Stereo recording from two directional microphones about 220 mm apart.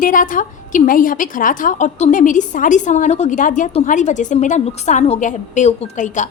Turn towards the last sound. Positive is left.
turn(degrees=35)  # may be behind; listen again after turning